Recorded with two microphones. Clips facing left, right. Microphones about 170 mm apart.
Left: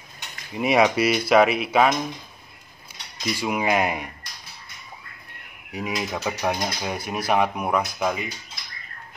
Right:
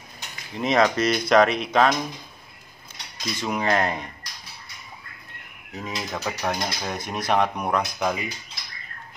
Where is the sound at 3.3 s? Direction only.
10° left (ahead or behind).